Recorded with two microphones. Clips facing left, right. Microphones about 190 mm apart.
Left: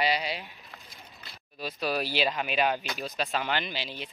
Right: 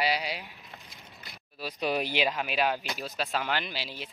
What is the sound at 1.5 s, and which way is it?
Speech, 15° right (ahead or behind).